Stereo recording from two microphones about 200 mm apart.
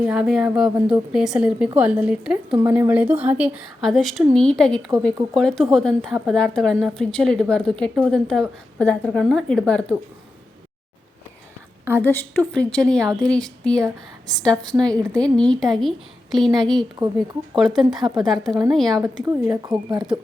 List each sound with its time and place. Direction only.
0.0 s a woman's voice: 5° right (ahead or behind)
12.0 s a woman's voice: 10° left (ahead or behind)
18.9 s speech: 20° right (ahead or behind)